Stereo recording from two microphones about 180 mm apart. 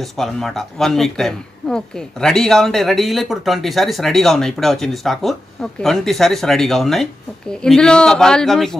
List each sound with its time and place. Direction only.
0.0 s speech: centre (ahead or behind)